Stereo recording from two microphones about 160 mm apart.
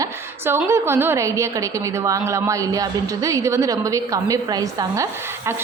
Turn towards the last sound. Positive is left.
turn(degrees=-20)  # may be behind; listen again after turning